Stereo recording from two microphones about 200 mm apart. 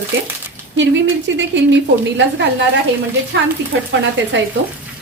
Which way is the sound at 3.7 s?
70° right (ahead or behind).